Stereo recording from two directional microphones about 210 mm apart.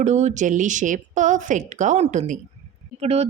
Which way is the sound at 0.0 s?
35° right (ahead or behind).